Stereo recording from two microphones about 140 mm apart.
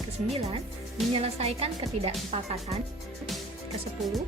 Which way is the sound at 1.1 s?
45° right (ahead or behind).